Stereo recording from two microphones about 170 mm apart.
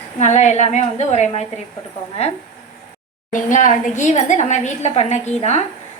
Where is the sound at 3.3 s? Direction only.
50° left (ahead or behind).